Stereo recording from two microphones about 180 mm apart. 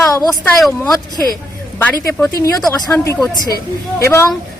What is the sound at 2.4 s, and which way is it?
A woman's voice, 20° left (ahead or behind).